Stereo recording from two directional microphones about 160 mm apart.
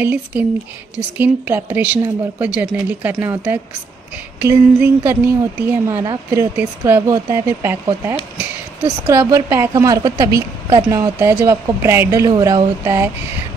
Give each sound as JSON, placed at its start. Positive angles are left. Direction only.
{"t": 0.0, "sound": "speech", "side_deg": -10}
{"t": 4.4, "sound": "a woman's voice", "side_deg": -15}
{"t": 11.0, "sound": "speech", "side_deg": -15}